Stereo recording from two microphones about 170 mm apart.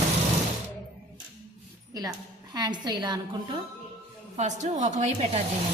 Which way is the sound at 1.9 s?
20° right (ahead or behind).